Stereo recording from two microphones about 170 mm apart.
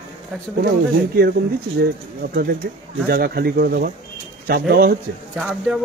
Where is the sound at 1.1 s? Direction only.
65° right (ahead or behind).